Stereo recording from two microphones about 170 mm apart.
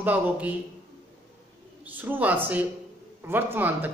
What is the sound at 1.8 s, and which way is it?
Speech, 10° right (ahead or behind).